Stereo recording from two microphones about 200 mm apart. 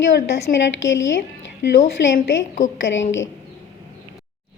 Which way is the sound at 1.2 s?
60° left (ahead or behind).